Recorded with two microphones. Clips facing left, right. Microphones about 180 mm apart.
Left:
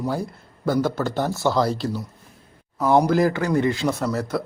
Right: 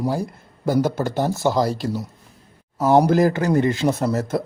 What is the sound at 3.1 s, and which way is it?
Speech, 45° right (ahead or behind).